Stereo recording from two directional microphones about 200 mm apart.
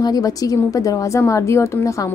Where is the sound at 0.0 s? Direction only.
20° left (ahead or behind).